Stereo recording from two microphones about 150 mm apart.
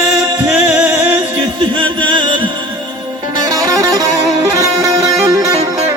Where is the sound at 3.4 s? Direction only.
25° right (ahead or behind).